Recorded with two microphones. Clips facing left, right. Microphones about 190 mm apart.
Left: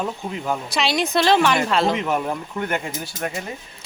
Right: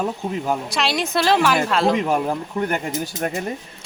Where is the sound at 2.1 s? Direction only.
30° right (ahead or behind).